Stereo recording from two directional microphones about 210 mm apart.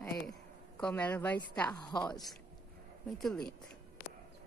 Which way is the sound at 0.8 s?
5° left (ahead or behind).